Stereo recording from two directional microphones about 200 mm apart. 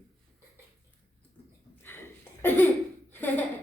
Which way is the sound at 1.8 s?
10° left (ahead or behind).